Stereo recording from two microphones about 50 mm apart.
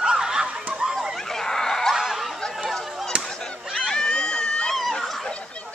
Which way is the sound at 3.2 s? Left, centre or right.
Centre.